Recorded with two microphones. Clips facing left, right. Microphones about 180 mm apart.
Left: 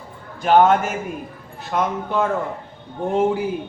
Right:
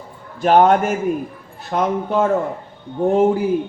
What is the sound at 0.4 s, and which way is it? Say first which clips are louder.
Speech: right 2 dB; 40° right (ahead or behind).